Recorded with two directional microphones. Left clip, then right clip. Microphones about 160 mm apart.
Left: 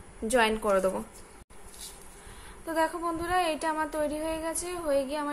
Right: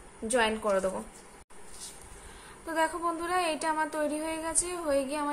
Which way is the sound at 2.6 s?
5° left (ahead or behind).